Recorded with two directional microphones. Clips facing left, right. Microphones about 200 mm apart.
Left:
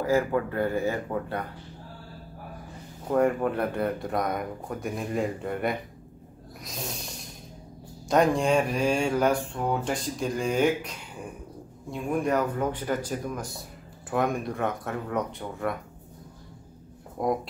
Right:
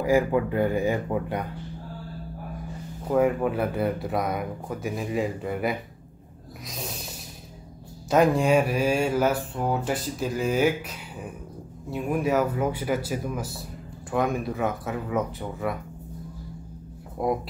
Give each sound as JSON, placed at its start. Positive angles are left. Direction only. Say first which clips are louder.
{"t": 0.0, "sound": "speech", "louder": "right 3 dB", "side_deg": -15}
{"t": 3.1, "sound": "speech", "louder": "right 1 dB", "side_deg": -5}
{"t": 6.7, "sound": "a sound", "louder": "even", "side_deg": 0}
{"t": 8.1, "sound": "speech", "louder": "right 2 dB", "side_deg": -5}
{"t": 11.9, "sound": "speech", "louder": "right 2 dB", "side_deg": -5}
{"t": 17.2, "sound": "speech", "louder": "right 1 dB", "side_deg": -5}